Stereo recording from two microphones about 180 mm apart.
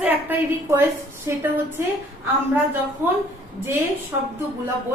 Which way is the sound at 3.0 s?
10° right (ahead or behind).